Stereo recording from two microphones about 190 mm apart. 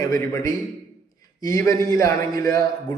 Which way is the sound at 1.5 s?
15° left (ahead or behind).